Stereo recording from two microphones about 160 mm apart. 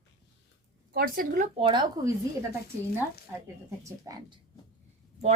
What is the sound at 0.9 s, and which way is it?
Speech, 65° right (ahead or behind).